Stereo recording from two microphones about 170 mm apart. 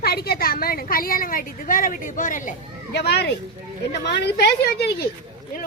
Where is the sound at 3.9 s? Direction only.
85° left.